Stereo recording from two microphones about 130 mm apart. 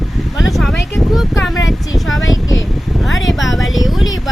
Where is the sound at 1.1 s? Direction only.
Centre (ahead or behind).